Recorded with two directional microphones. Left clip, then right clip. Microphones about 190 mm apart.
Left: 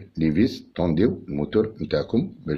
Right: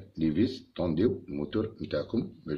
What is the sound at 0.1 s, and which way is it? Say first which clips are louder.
Speech: left 6 dB; 25° left (ahead or behind).